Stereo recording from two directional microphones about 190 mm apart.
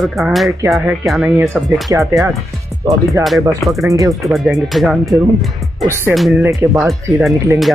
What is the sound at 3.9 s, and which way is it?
Speech, 15° right (ahead or behind).